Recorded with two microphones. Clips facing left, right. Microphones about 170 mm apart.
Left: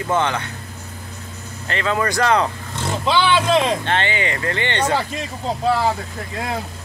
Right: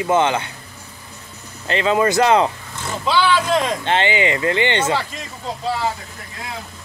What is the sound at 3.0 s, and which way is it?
Speech, 25° left (ahead or behind).